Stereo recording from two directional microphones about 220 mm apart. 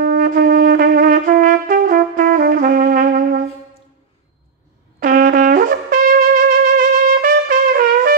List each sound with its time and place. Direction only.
0.1 s trumpet: 40° right (ahead or behind)
5.0 s music: 40° right (ahead or behind)
7.2 s trumpet: 40° right (ahead or behind)